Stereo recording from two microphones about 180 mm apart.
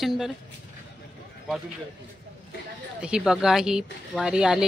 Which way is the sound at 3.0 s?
5° right (ahead or behind).